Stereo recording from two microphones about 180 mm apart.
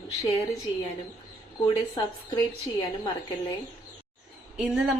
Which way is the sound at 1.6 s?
25° left (ahead or behind).